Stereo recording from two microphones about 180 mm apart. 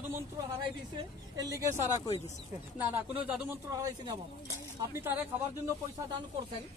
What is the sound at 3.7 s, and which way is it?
Speech, 20° right (ahead or behind).